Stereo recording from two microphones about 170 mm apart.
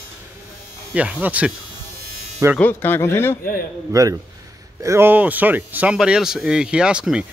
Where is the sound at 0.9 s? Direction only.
10° right (ahead or behind).